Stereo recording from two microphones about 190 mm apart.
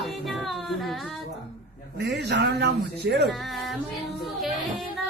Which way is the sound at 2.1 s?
65° right (ahead or behind).